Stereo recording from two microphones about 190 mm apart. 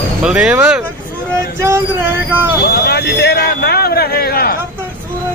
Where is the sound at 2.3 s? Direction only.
10° right (ahead or behind).